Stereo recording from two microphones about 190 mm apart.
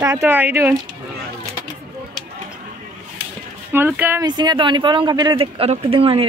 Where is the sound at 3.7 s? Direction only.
10° right (ahead or behind).